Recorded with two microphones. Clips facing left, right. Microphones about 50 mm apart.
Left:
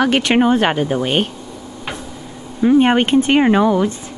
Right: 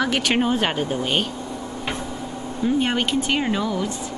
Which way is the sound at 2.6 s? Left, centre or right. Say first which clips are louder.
Left 9 dB; left.